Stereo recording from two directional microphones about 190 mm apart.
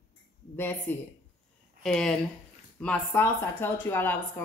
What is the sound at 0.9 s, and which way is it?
A woman's voice, 10° left (ahead or behind).